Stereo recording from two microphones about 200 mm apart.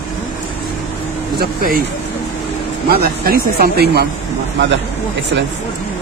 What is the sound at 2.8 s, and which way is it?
Speech, 50° right (ahead or behind).